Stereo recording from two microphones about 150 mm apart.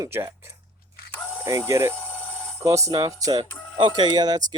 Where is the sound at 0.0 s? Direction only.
20° right (ahead or behind).